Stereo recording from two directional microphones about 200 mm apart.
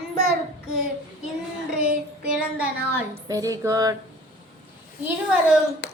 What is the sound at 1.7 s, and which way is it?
Child singing, 45° right (ahead or behind).